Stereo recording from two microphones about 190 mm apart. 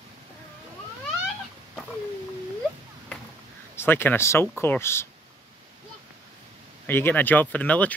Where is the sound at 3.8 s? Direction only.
10° left (ahead or behind).